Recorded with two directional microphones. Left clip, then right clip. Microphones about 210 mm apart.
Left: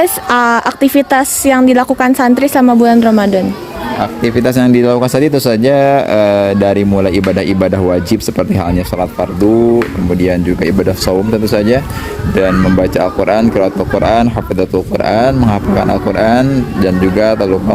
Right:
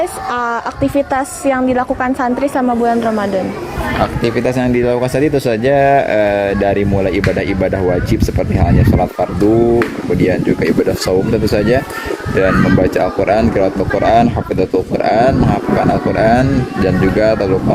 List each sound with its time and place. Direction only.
0.0 s speech: 45° left (ahead or behind)
4.4 s speech: 50° left (ahead or behind)